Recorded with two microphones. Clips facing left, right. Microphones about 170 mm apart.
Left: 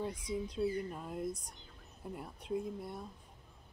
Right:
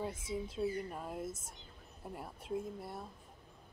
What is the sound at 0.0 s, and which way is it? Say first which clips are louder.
Speech: left 1 dB; 5° right (ahead or behind).